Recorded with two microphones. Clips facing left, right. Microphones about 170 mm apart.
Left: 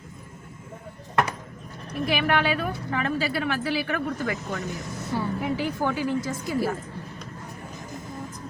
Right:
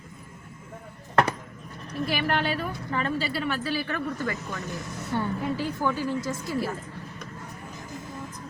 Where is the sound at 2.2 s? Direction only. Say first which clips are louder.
Left 4 dB; 60° left (ahead or behind).